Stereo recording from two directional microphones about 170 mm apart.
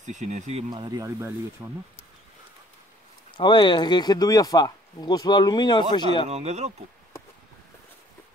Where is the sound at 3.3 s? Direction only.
25° left (ahead or behind).